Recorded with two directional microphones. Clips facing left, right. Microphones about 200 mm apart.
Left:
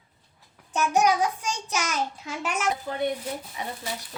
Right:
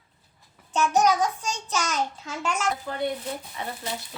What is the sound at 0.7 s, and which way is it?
A child's voice, 10° left (ahead or behind).